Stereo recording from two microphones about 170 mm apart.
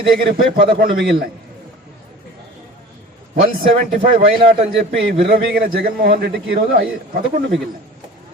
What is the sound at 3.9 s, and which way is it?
Speech, 55° right (ahead or behind).